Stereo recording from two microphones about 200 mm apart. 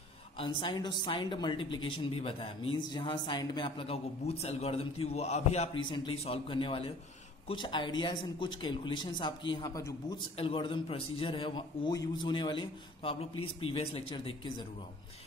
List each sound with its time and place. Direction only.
0.4 s a man's voice: 25° left (ahead or behind)